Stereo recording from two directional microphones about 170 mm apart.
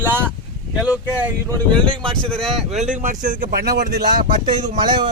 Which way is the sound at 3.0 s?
50° right (ahead or behind).